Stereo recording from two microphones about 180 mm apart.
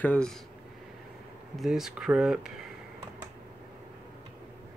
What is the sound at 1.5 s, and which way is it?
Speech, centre (ahead or behind).